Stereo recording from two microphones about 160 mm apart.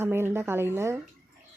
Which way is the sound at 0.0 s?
15° right (ahead or behind).